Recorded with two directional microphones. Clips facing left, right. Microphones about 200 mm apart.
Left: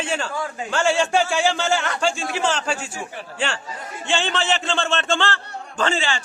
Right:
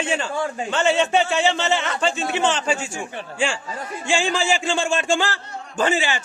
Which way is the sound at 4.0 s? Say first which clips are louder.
Right 2 dB; 10° right (ahead or behind).